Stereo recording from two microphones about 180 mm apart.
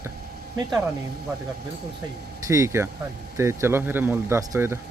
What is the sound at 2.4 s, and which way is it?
Speech, 15° right (ahead or behind).